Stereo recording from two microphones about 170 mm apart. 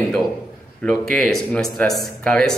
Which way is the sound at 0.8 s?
5° left (ahead or behind).